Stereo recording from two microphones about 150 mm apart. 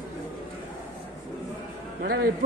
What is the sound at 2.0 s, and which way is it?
Speech, 80° right.